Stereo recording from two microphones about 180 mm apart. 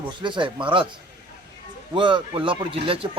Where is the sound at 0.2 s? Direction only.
25° right (ahead or behind).